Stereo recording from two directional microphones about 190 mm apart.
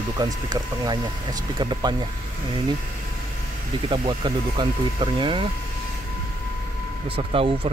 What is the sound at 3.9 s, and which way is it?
Speech, 25° right (ahead or behind).